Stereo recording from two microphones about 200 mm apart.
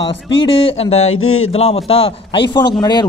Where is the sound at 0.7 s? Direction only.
30° left (ahead or behind).